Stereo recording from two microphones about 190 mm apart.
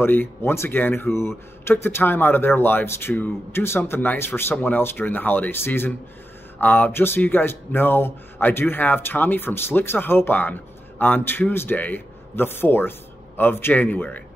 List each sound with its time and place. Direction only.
0.0 s speech: 10° left (ahead or behind)